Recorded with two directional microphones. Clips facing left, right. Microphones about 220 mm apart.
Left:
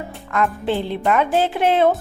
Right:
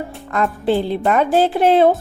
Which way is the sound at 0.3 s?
40° right (ahead or behind).